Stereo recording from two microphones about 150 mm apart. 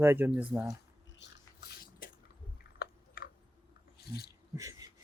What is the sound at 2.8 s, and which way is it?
Chewing, 90° left.